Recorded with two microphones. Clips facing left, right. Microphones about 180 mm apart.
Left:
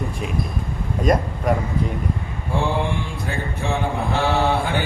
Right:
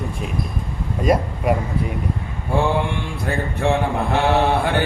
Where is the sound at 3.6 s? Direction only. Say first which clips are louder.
Right 6 dB; 70° right (ahead or behind).